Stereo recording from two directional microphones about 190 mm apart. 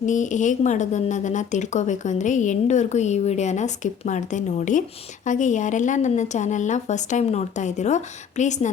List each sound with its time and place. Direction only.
0.0 s speech: 40° left (ahead or behind)